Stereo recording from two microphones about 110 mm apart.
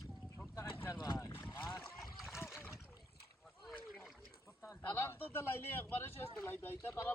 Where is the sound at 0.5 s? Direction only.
20° left (ahead or behind).